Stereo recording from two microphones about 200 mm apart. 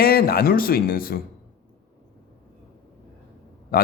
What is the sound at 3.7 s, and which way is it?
Speech, 50° left (ahead or behind).